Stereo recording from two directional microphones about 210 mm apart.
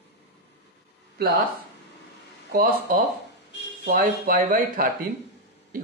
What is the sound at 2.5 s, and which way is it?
Speech, 45° right (ahead or behind).